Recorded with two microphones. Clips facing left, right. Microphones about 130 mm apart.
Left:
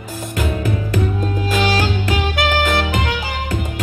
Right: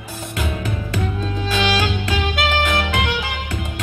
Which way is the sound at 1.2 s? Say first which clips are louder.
Left 3 dB; 45° left (ahead or behind).